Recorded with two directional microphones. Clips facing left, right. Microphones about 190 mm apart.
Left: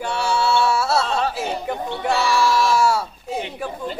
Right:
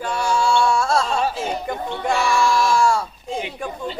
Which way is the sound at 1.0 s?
10° right (ahead or behind).